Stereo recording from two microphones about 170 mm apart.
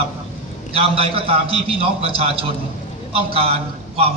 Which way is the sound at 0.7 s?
35° right (ahead or behind).